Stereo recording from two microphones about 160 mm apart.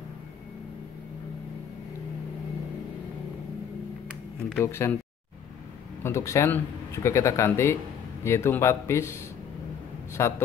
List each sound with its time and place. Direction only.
4.6 s speech: 15° left (ahead or behind)
6.0 s speech: 20° left (ahead or behind)